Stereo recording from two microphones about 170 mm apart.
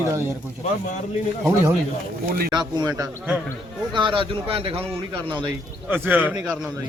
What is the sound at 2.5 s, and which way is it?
Speech, 25° right (ahead or behind).